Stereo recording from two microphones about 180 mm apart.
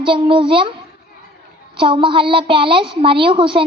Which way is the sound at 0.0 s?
30° right (ahead or behind).